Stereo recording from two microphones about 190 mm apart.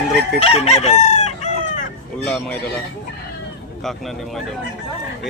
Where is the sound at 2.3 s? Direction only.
5° left (ahead or behind).